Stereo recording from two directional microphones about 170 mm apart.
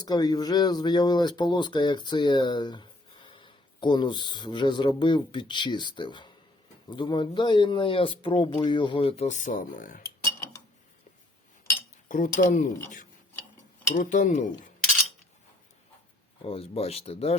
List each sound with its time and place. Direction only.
0.0 s speech: 25° left (ahead or behind); by 10.0 s 55° left (ahead or behind)
12.0 s speech: 50° left (ahead or behind)
16.4 s speech: 35° left (ahead or behind)